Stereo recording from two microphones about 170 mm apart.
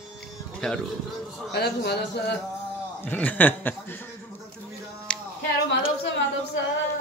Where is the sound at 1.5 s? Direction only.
70° left (ahead or behind).